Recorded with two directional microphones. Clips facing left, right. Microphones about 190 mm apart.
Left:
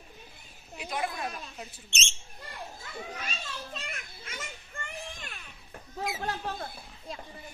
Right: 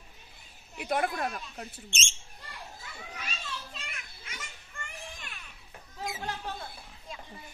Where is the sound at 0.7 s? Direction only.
55° right (ahead or behind).